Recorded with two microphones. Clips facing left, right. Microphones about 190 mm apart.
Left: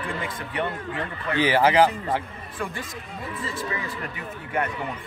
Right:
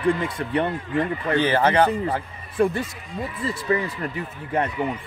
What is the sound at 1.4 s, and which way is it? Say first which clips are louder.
Speech: left 1 dB; 5° left (ahead or behind).